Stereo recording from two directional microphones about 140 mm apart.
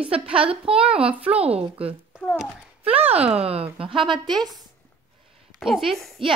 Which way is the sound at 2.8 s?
45° right (ahead or behind).